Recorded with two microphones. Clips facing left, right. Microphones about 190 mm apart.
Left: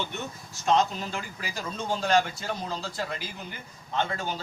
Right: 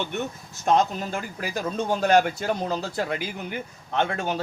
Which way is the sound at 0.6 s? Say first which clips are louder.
Right 3 dB; 50° right (ahead or behind).